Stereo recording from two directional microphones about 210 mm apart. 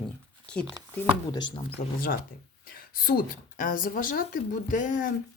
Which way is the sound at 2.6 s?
40° left (ahead or behind).